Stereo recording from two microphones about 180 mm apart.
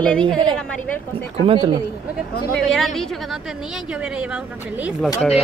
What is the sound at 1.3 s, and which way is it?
Speech, 30° right (ahead or behind).